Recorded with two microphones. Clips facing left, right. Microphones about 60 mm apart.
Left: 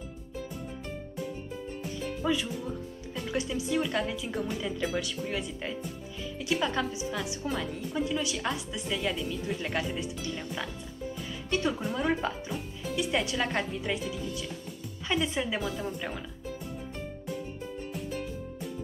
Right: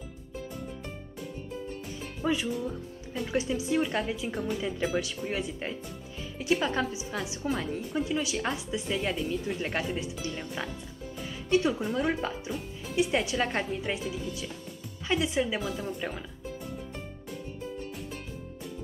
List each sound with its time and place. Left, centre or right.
2.0 s music: centre
3.3 s speech: right
4.3 s a woman's voice: centre
5.3 s speech: centre
6.9 s speech: right
7.4 s speech: centre
8.0 s speech: centre
9.4 s speech: centre
11.1 s music: centre
11.8 s speech: centre
12.9 s speech: centre
15.0 s a woman's voice: centre